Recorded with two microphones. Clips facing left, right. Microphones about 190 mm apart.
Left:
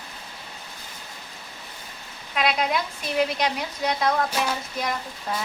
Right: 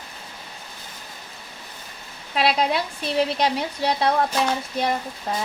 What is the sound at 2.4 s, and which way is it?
A woman's voice, 35° right (ahead or behind).